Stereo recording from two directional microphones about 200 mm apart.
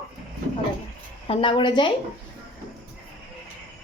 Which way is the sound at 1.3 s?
25° left (ahead or behind).